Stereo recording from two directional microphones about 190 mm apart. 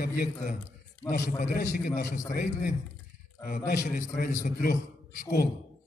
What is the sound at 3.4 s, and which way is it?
A man's voice, 45° left (ahead or behind).